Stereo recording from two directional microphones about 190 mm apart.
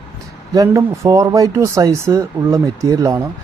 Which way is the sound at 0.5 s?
15° right (ahead or behind).